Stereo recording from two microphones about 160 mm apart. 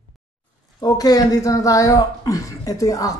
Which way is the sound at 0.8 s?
25° left (ahead or behind).